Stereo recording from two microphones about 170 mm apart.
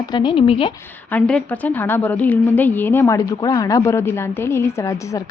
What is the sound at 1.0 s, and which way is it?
A woman's voice, 5° left (ahead or behind).